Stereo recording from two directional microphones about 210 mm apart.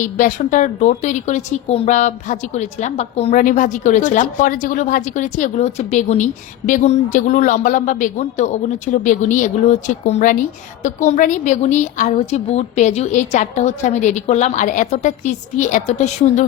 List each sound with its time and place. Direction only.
0.0 s a woman's voice: 35° left (ahead or behind)